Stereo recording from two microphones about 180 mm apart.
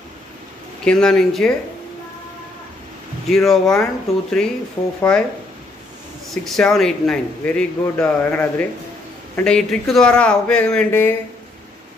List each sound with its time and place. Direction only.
0.8 s a man's voice: 5° left (ahead or behind)
3.3 s a man's voice: centre (ahead or behind)
6.3 s a man's voice: centre (ahead or behind)